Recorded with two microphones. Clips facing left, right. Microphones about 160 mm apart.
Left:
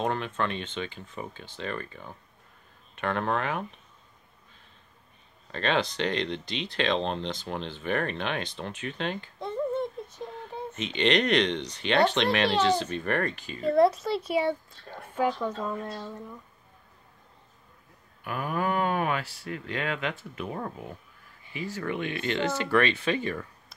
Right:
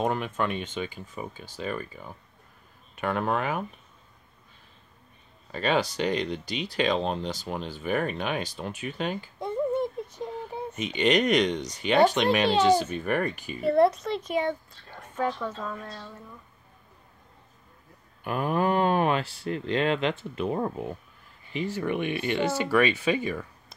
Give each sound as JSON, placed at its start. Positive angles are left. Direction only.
{"t": 0.0, "sound": "speech", "side_deg": -10}
{"t": 5.5, "sound": "speech", "side_deg": -10}
{"t": 10.1, "sound": "a sound", "side_deg": -15}
{"t": 11.7, "sound": "a woman's voice", "side_deg": -10}
{"t": 18.2, "sound": "speech", "side_deg": -30}